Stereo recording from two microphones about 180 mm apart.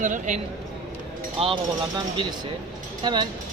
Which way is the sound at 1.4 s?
30° right (ahead or behind).